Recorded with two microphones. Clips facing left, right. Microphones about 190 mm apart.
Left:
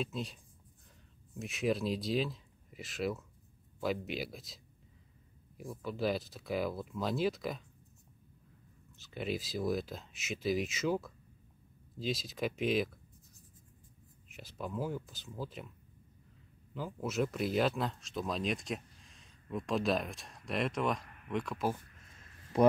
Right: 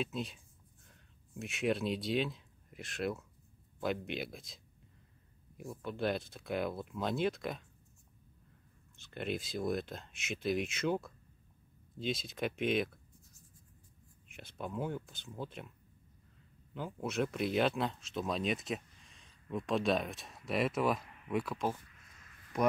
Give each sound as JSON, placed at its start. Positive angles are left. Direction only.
{"t": 0.0, "sound": "speech", "side_deg": 0}
{"t": 5.6, "sound": "speech", "side_deg": 0}
{"t": 8.9, "sound": "speech", "side_deg": 0}
{"t": 14.3, "sound": "speech", "side_deg": 0}
{"t": 16.7, "sound": "speech", "side_deg": 0}
{"t": 22.5, "sound": "speech", "side_deg": 30}